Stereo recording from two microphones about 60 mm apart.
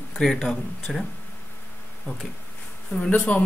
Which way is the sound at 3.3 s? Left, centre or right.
Left.